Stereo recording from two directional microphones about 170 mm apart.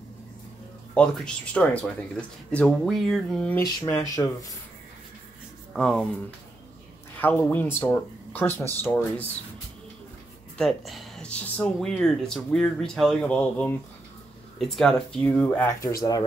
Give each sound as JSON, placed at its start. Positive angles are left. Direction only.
{"t": 0.9, "sound": "speech", "side_deg": 5}
{"t": 4.1, "sound": "speech", "side_deg": 20}
{"t": 5.7, "sound": "speech", "side_deg": 5}
{"t": 7.2, "sound": "speech", "side_deg": 10}
{"t": 10.6, "sound": "speech", "side_deg": 0}
{"t": 15.8, "sound": "speech", "side_deg": 20}